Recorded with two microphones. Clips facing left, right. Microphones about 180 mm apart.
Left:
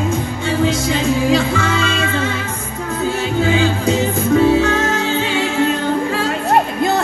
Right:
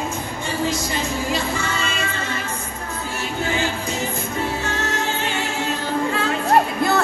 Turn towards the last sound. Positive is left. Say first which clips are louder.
# left 6 dB
turn(degrees=90)